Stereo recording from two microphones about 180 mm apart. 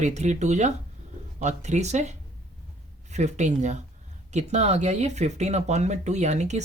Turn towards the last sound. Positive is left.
turn(degrees=-40)  # may be behind; listen again after turning